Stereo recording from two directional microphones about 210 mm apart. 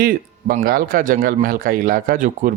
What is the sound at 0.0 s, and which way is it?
A man's voice, 45° right (ahead or behind).